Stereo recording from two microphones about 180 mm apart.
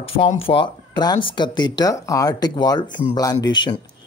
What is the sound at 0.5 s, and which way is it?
Speech, 25° left (ahead or behind).